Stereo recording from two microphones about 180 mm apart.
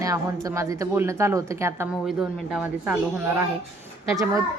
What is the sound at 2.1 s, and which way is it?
Speech, 5° right (ahead or behind).